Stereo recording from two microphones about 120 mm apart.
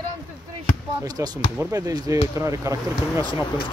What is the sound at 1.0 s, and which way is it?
Speech, 35° right (ahead or behind).